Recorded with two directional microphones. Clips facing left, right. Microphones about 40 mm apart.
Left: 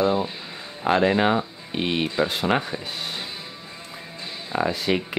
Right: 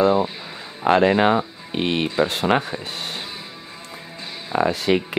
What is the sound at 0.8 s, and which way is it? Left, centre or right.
Speech, right.